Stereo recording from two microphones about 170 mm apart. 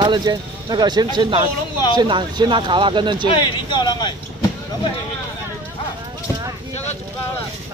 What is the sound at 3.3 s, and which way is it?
Speech, 25° left (ahead or behind).